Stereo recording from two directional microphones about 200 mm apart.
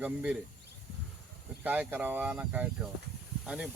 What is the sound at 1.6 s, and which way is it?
Speech, 10° right (ahead or behind).